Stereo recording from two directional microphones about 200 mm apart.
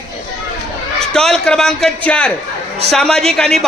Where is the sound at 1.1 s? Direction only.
5° left (ahead or behind).